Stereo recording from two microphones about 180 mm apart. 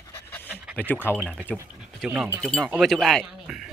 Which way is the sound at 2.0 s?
5° right (ahead or behind).